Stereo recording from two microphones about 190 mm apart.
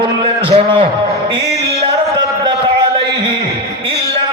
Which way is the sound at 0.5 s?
30° right (ahead or behind).